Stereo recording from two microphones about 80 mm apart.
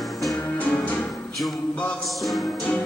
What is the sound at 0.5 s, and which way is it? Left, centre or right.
Music, centre.